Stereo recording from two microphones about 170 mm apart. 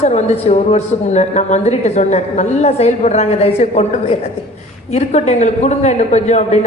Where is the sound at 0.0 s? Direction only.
40° left (ahead or behind).